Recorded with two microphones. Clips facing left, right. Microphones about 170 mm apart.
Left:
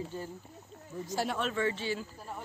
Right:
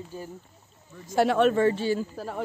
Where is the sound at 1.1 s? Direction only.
65° right (ahead or behind).